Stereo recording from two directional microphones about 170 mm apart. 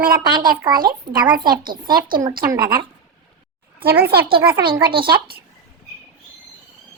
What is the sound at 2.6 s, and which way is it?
Speech, 65° right (ahead or behind).